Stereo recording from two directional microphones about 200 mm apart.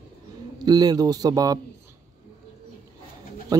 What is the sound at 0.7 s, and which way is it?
Speech, 20° right (ahead or behind).